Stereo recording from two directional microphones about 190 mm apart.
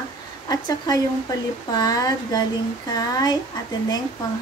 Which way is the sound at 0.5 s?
20° left (ahead or behind).